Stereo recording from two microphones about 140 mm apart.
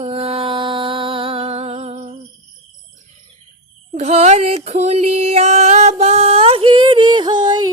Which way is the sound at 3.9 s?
50° right (ahead or behind).